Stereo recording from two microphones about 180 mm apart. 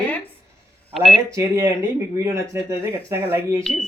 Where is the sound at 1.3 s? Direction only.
15° right (ahead or behind).